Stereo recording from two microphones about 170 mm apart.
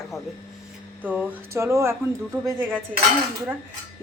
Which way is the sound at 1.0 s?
15° right (ahead or behind).